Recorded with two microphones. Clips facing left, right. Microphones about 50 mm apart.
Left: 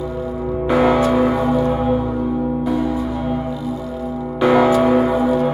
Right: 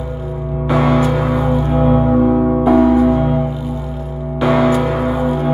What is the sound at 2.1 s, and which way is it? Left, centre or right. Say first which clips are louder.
Music: right 7 dB; right.